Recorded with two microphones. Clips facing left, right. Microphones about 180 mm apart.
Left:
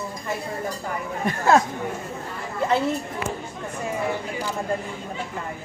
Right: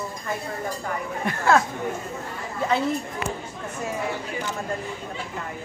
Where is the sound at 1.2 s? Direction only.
20° left (ahead or behind).